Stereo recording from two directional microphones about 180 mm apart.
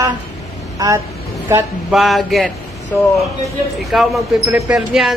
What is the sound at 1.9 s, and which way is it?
Speech, centre (ahead or behind).